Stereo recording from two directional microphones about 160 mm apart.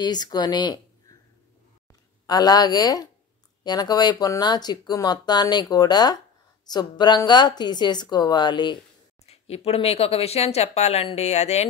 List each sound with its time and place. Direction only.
0.0 s speech: 25° left (ahead or behind)
1.9 s speech: 25° left (ahead or behind)
9.2 s speech: 40° left (ahead or behind)